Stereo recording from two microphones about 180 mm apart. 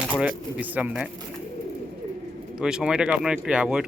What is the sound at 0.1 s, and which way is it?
Speech, 10° right (ahead or behind).